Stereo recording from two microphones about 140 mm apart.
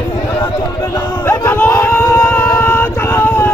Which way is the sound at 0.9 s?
15° left (ahead or behind).